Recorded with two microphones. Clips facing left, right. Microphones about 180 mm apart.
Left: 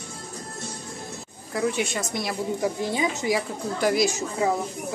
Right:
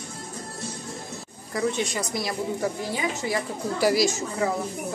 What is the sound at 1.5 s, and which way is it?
Speech, 5° left (ahead or behind).